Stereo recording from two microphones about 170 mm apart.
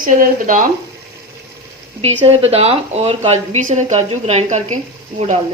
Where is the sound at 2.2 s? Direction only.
35° right (ahead or behind).